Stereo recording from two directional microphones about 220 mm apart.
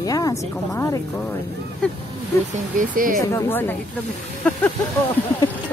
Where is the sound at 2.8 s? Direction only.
40° right (ahead or behind).